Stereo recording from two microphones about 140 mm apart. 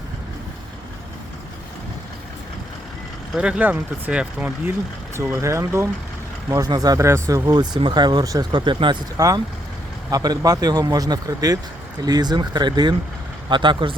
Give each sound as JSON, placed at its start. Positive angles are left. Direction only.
{"t": 3.3, "sound": "speech", "side_deg": -10}